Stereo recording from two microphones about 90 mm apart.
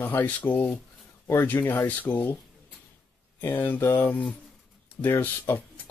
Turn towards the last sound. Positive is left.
turn(degrees=20)  # may be behind; listen again after turning